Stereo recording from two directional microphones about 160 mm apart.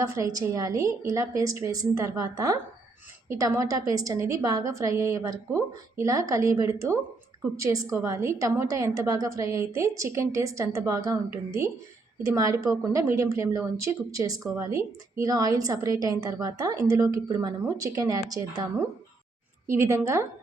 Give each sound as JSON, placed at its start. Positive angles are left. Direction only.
{"t": 0.0, "sound": "a woman's voice", "side_deg": -20}
{"t": 19.6, "sound": "a woman's voice", "side_deg": -20}